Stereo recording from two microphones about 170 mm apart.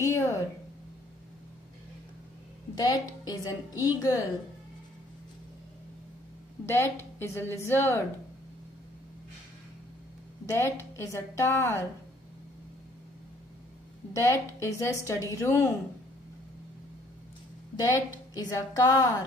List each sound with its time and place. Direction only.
0.0 s a woman's voice: 15° left (ahead or behind)
2.7 s a woman's voice: 20° left (ahead or behind)
6.6 s a woman's voice: 15° left (ahead or behind)
10.4 s a woman's voice: 20° left (ahead or behind)
14.1 s a woman's voice: 15° left (ahead or behind)
17.7 s a woman's voice: 20° left (ahead or behind)